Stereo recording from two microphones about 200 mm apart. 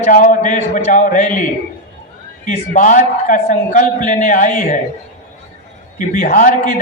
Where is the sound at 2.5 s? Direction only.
40° left (ahead or behind).